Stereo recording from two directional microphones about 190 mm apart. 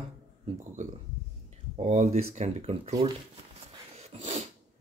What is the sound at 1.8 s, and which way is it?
Speech, 35° right (ahead or behind).